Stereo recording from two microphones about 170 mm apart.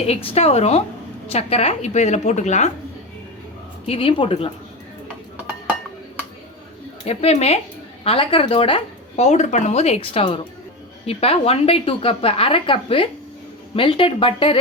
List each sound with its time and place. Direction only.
0.0 s a woman's voice: 35° left (ahead or behind)
3.8 s a woman's voice: 35° left (ahead or behind)
7.0 s a woman's voice: 35° left (ahead or behind)